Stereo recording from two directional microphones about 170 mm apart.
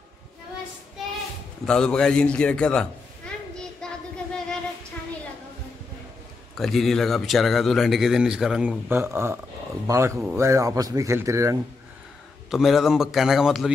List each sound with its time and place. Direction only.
1.7 s a man's voice: 5° left (ahead or behind)
3.8 s child singing: 5° left (ahead or behind)
6.5 s a man's voice: centre (ahead or behind); by 11.5 s 15° right (ahead or behind)
12.4 s a man's voice: centre (ahead or behind)